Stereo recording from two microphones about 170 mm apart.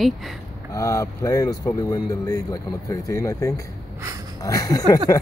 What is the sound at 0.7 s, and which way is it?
Speech, 20° left (ahead or behind).